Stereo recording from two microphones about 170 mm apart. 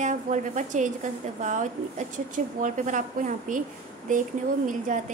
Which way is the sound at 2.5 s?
50° right (ahead or behind).